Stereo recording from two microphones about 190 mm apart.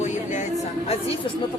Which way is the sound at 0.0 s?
40° left (ahead or behind).